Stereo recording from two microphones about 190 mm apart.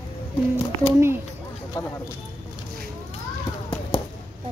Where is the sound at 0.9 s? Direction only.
15° right (ahead or behind).